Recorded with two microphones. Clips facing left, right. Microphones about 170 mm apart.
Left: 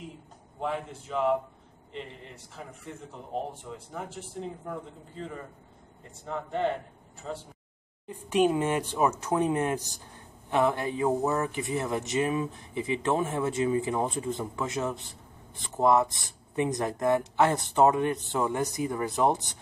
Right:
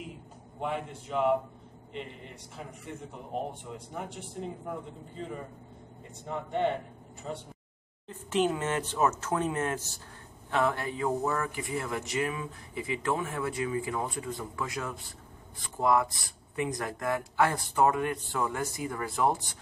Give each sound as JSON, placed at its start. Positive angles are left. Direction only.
{"t": 0.6, "sound": "speech", "side_deg": -5}
{"t": 3.9, "sound": "speech", "side_deg": 0}
{"t": 6.2, "sound": "speech", "side_deg": -5}
{"t": 8.1, "sound": "speech", "side_deg": 15}